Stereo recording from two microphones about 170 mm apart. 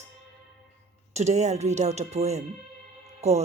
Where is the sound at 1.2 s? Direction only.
40° right (ahead or behind).